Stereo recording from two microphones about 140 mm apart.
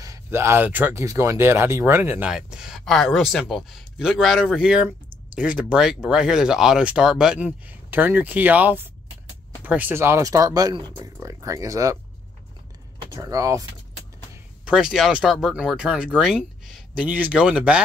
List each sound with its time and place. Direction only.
0.0 s speech: 20° right (ahead or behind)
13.1 s speech: 25° right (ahead or behind)
14.6 s speech: 5° right (ahead or behind)